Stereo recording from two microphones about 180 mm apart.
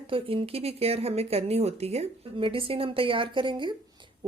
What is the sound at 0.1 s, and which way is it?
Speech, 30° right (ahead or behind).